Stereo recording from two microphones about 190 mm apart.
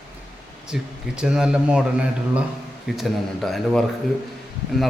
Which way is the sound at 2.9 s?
Centre (ahead or behind).